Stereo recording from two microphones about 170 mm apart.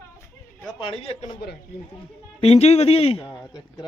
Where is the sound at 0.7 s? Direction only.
30° left (ahead or behind).